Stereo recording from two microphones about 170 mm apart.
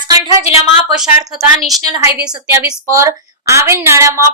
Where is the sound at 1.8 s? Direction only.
20° right (ahead or behind).